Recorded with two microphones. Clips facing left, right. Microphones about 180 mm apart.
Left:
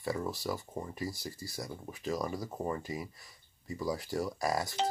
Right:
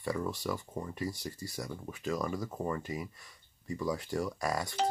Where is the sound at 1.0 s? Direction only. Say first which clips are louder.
Right 1 dB; 5° left (ahead or behind).